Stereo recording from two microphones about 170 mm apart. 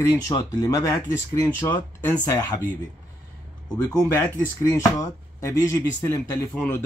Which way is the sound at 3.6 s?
20° left (ahead or behind).